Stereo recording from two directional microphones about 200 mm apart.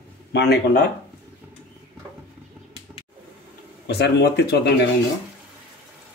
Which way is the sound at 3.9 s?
55° left (ahead or behind).